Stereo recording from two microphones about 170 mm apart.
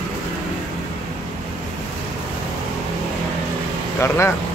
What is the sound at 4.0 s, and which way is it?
Speech, 15° left (ahead or behind).